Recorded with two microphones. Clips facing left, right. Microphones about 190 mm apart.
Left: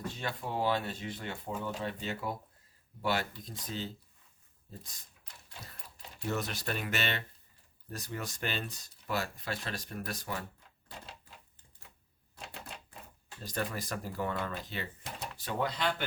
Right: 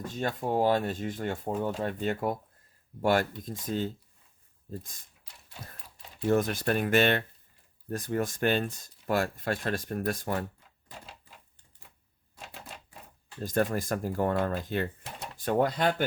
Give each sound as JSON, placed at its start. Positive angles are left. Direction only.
{"t": 0.1, "sound": "speech", "side_deg": -45}
{"t": 6.2, "sound": "speech", "side_deg": -50}
{"t": 12.4, "sound": "typewriter", "side_deg": -5}
{"t": 13.4, "sound": "speech", "side_deg": -50}